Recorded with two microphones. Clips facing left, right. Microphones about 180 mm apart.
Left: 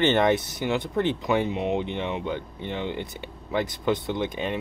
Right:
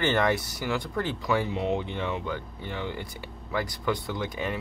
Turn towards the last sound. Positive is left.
turn(degrees=20)  # may be behind; listen again after turning